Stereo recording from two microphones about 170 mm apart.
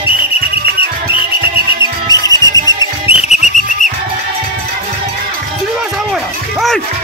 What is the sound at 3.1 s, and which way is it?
Whistle, 45° left (ahead or behind).